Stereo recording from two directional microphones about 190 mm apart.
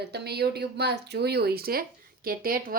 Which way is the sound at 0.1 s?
60° right (ahead or behind).